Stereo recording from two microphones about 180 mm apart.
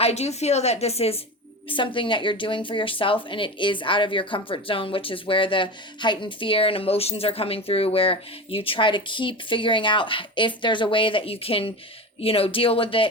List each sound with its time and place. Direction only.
0.0 s a woman's voice: 35° left (ahead or behind)